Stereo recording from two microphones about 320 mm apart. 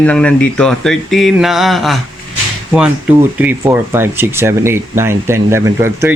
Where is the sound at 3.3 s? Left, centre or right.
Centre.